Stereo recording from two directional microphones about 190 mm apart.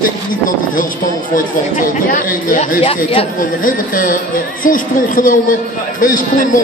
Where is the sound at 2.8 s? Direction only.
30° left (ahead or behind).